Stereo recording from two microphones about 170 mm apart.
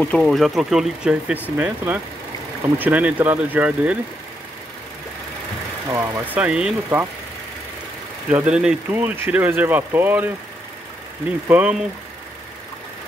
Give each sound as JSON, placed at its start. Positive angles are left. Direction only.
{"t": 0.0, "sound": "speech", "side_deg": 5}
{"t": 5.9, "sound": "speech", "side_deg": -20}
{"t": 8.3, "sound": "speech", "side_deg": -5}
{"t": 11.4, "sound": "speech", "side_deg": -10}